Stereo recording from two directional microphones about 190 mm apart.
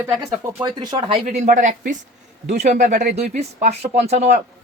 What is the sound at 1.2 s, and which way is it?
Speech, 40° right (ahead or behind).